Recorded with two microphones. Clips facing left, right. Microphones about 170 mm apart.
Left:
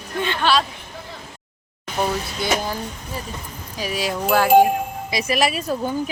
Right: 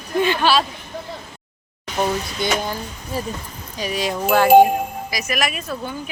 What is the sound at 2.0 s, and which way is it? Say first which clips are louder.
Speech: right 2 dB; 5° left (ahead or behind).